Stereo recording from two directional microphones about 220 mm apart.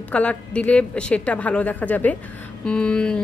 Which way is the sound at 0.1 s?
5° left (ahead or behind).